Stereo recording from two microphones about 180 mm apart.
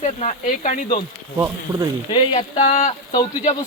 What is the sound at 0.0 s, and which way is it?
Speech, 40° left (ahead or behind).